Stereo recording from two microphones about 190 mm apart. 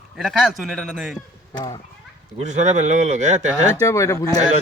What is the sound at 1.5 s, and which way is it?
Speech, 20° left (ahead or behind).